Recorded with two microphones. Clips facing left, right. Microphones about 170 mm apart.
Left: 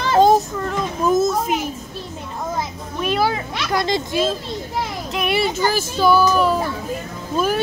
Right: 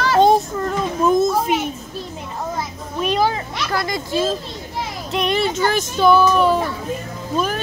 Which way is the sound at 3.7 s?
20° left (ahead or behind).